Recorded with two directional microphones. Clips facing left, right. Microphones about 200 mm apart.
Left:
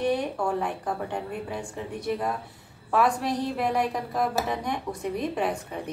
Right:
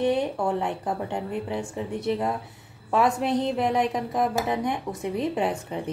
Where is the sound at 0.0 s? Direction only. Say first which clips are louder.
Right 2 dB; 20° right (ahead or behind).